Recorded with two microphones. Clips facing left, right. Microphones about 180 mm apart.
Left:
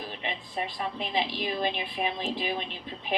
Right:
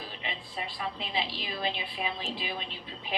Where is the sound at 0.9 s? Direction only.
15° left (ahead or behind).